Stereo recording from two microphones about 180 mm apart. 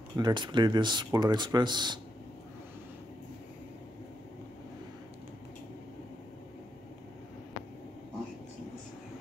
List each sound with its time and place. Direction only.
0.1 s speech: 25° right (ahead or behind)